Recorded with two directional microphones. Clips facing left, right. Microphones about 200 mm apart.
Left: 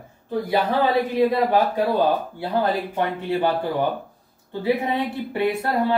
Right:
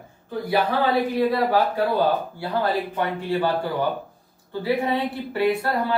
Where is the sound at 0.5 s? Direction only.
20° left (ahead or behind).